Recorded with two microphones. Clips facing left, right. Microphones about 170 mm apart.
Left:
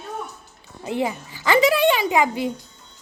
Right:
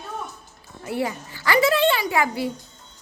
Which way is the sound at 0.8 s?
20° left (ahead or behind).